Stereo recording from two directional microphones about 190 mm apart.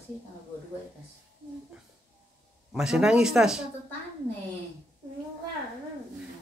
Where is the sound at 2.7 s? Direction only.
5° right (ahead or behind).